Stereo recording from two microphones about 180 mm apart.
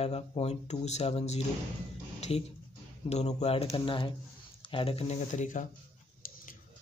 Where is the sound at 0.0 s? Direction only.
35° left (ahead or behind).